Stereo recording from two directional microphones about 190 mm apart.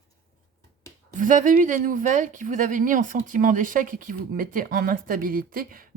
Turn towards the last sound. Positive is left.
turn(degrees=-50)  # may be behind; listen again after turning